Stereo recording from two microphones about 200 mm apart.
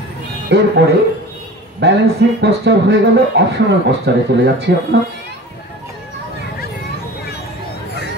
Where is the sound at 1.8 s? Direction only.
60° right (ahead or behind).